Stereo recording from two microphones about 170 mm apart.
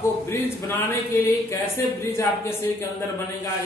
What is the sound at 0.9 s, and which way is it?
Speech, 15° left (ahead or behind).